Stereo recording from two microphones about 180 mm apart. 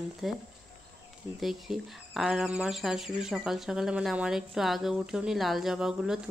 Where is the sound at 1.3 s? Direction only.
Centre (ahead or behind).